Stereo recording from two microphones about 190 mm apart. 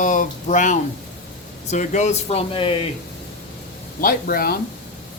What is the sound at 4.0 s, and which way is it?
Speech, 50° left (ahead or behind).